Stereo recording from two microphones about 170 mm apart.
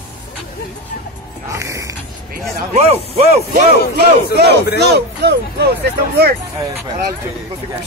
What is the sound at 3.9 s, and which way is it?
Speech, 70° right (ahead or behind).